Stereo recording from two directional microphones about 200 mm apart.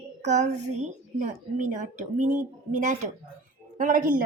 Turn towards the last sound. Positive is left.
turn(degrees=-45)  # may be behind; listen again after turning